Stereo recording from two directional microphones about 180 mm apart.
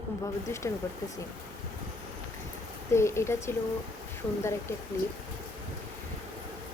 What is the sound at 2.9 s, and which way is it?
Speech, 15° left (ahead or behind).